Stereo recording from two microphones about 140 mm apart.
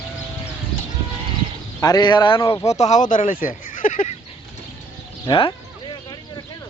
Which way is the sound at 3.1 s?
70° left (ahead or behind).